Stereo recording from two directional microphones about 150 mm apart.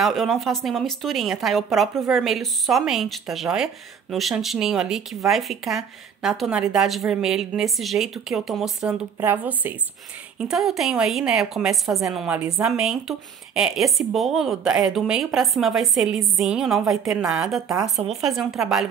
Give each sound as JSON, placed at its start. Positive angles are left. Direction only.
{"t": 0.0, "sound": "speech", "side_deg": 0}